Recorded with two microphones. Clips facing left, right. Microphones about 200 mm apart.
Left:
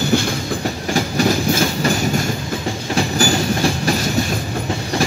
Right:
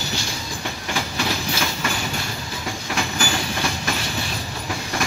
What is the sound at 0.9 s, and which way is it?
Train, 45° left (ahead or behind).